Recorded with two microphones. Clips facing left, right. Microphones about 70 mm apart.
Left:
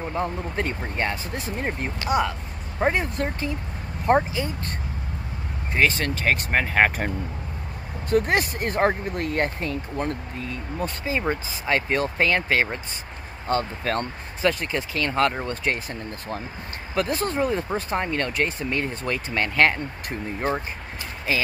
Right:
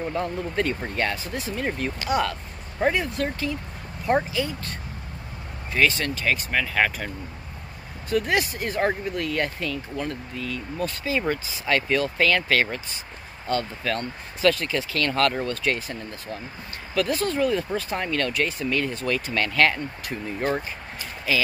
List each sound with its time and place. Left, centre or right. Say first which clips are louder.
0.0 s speech: even; centre; by 7.1 s left
8.1 s speech: left 2 dB; left
13.5 s speech: left 2 dB; left
14.4 s speech: right 2 dB; left
16.1 s speech: left 3 dB; left
16.9 s speech: even; left
21.3 s speech: right 1 dB; left